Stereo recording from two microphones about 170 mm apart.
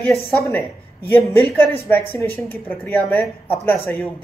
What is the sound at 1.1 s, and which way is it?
A woman's voice, 10° left (ahead or behind).